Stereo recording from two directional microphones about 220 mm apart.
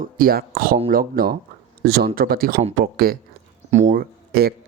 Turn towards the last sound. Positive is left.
turn(degrees=-45)  # may be behind; listen again after turning